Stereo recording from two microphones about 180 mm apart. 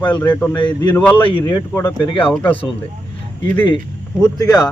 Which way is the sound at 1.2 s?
30° left (ahead or behind).